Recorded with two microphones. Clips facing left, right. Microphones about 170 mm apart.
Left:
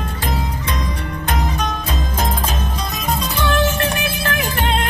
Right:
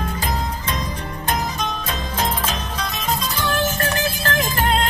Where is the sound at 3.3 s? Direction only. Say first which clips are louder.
Left 6 dB; 65° left (ahead or behind).